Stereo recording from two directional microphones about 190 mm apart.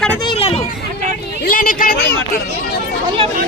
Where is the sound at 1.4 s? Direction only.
50° left (ahead or behind).